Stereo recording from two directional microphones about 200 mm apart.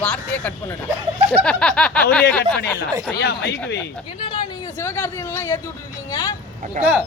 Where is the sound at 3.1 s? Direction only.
55° left (ahead or behind).